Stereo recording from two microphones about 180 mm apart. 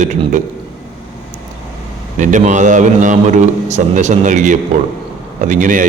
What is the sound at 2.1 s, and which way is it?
A man's voice, 45° right (ahead or behind).